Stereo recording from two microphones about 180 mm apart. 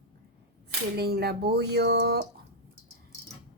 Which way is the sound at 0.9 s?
60° right (ahead or behind).